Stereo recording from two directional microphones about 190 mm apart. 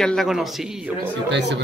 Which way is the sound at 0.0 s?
Centre (ahead or behind).